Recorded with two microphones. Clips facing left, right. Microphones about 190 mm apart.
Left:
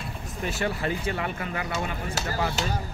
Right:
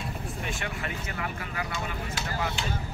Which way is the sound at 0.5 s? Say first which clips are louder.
Left 10 dB; 35° left (ahead or behind).